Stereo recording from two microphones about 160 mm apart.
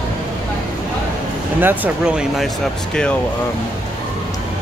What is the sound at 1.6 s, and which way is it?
Speech, 10° right (ahead or behind).